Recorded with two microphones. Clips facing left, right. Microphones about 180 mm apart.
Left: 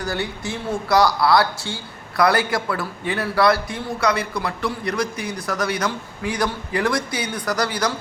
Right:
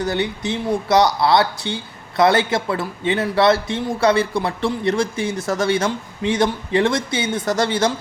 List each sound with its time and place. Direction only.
0.0 s speech: 20° right (ahead or behind)